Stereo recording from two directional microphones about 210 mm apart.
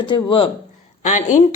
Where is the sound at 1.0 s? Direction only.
35° left (ahead or behind).